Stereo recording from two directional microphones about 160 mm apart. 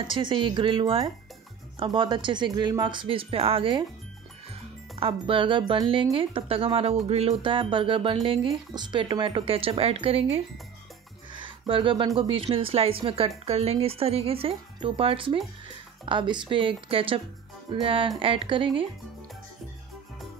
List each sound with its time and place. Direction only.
0.0 s speech: 30° right (ahead or behind)
11.3 s music: 30° right (ahead or behind)
12.2 s speech: 35° right (ahead or behind)